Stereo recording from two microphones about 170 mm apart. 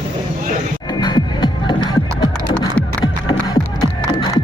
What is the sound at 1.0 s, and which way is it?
Music, 25° left (ahead or behind).